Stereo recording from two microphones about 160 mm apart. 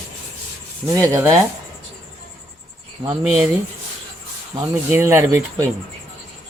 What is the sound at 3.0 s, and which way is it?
Speech, 30° right (ahead or behind).